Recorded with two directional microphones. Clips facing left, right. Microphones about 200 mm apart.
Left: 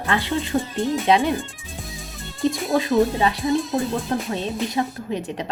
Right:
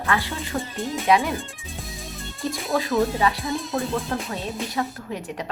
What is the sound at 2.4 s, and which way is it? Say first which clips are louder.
Music: left 7 dB; 20° left (ahead or behind).